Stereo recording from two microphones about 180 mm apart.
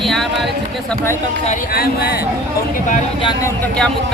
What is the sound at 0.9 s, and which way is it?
Speech, 15° left (ahead or behind).